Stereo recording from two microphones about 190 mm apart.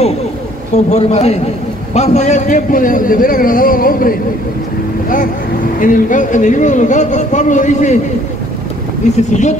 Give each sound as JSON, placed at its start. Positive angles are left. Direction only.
{"t": 0.8, "sound": "a man's voice", "side_deg": 35}
{"t": 5.8, "sound": "a man's voice", "side_deg": 45}
{"t": 9.1, "sound": "a man's voice", "side_deg": 40}